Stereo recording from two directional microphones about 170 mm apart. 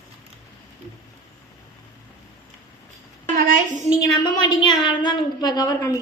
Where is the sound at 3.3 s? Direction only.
55° right (ahead or behind).